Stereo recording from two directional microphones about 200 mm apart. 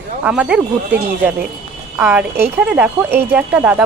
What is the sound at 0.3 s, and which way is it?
Speech, 5° right (ahead or behind).